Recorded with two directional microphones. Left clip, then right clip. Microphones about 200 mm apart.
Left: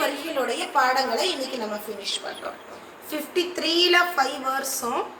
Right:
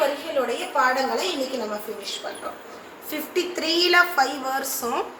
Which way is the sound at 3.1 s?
Centre (ahead or behind).